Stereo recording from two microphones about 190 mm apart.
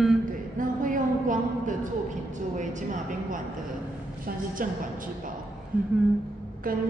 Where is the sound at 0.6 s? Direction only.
45° right (ahead or behind).